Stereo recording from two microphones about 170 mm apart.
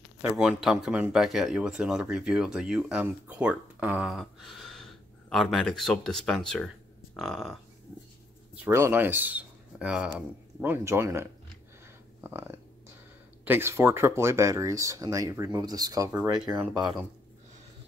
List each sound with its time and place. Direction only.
0.2 s speech: 5° right (ahead or behind)
8.5 s speech: 15° right (ahead or behind)
12.2 s a sound: 15° right (ahead or behind)
13.5 s speech: 15° right (ahead or behind)
16.2 s speech: 5° right (ahead or behind)